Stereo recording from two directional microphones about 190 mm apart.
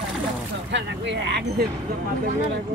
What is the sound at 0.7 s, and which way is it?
Speech, 70° right (ahead or behind).